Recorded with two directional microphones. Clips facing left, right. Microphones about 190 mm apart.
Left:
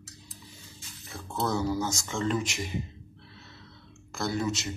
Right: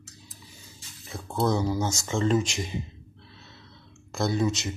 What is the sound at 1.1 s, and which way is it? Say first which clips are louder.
Speech: right 4 dB; 20° right (ahead or behind).